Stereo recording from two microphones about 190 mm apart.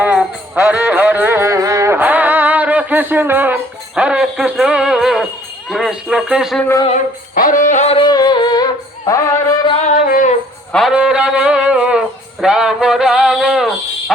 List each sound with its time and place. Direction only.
0.0 s music: 10° right (ahead or behind)
6.8 s singing: 45° left (ahead or behind); by 9.2 s 20° left (ahead or behind)
9.8 s music: 40° left (ahead or behind)
10.7 s music: centre (ahead or behind)